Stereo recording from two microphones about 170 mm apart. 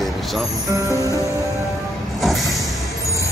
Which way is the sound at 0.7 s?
20° right (ahead or behind).